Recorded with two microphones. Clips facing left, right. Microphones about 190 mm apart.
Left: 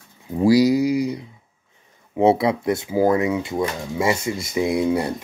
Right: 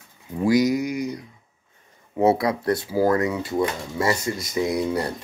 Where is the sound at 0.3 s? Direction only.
30° left (ahead or behind).